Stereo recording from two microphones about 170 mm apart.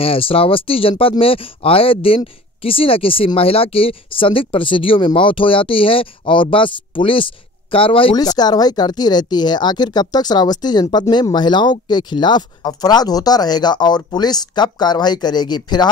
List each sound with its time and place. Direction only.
0.0 s speech: 35° left (ahead or behind)